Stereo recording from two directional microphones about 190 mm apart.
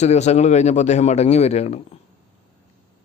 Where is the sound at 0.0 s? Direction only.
35° left (ahead or behind).